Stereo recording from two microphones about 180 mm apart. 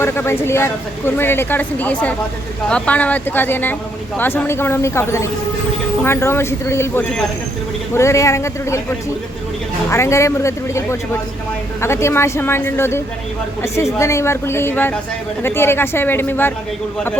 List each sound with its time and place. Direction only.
0.0 s speech: 15° left (ahead or behind)
14.0 s speech: 15° left (ahead or behind)